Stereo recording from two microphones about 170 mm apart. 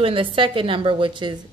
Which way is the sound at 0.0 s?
30° right (ahead or behind).